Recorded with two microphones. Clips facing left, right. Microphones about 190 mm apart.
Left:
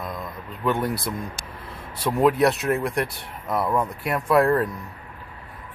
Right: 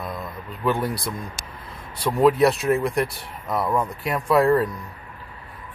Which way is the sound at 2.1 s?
Centre (ahead or behind).